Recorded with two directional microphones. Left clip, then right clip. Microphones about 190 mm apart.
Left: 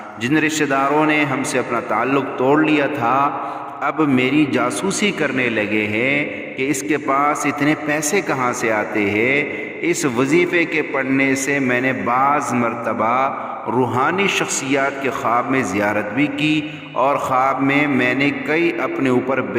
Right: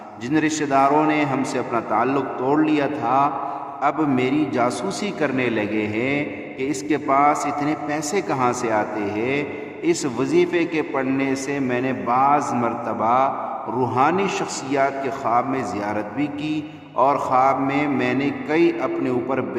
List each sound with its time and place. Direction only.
0.3 s a man's voice: 25° left (ahead or behind)
2.0 s a man's voice: 15° left (ahead or behind)